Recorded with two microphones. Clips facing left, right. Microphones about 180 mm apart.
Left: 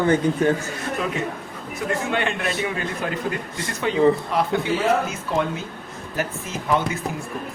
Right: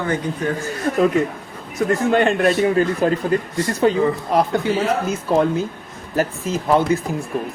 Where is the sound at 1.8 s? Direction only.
45° right (ahead or behind).